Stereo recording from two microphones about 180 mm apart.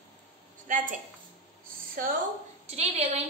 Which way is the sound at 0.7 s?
45° right (ahead or behind).